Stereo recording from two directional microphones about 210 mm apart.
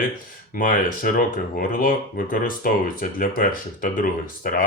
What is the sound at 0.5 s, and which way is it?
Speech, 40° left (ahead or behind).